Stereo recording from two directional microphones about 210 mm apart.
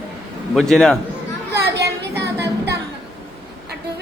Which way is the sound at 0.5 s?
Centre (ahead or behind).